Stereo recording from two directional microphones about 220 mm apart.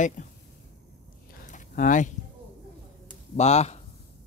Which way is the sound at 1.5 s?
35° left (ahead or behind).